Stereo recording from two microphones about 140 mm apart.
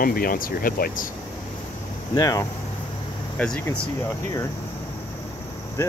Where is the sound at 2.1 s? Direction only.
25° left (ahead or behind).